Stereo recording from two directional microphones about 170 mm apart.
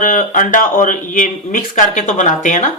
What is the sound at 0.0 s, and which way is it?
Speech, 50° left (ahead or behind).